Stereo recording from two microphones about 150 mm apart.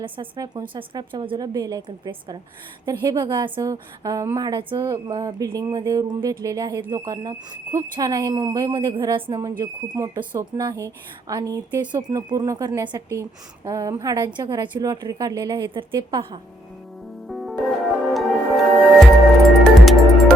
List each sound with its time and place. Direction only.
0.3 s speech: 25° right (ahead or behind)
17.2 s music: centre (ahead or behind)
19.8 s music: centre (ahead or behind)